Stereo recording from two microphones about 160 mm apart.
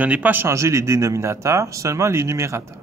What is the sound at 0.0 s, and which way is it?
A man's voice, 10° right (ahead or behind).